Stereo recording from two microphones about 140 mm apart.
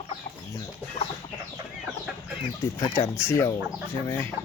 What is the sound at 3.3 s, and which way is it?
Speech, 20° left (ahead or behind).